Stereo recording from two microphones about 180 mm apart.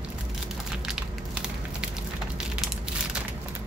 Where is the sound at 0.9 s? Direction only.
5° right (ahead or behind).